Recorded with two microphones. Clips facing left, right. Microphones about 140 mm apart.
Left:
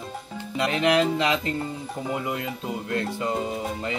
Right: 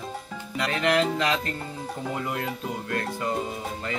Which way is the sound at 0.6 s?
20° left (ahead or behind).